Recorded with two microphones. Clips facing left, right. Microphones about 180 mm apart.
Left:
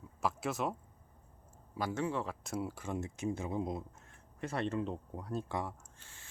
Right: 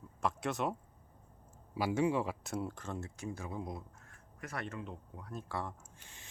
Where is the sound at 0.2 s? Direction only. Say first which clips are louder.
Even; centre (ahead or behind).